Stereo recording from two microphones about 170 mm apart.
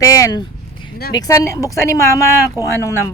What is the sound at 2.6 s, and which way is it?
Speech, 15° right (ahead or behind).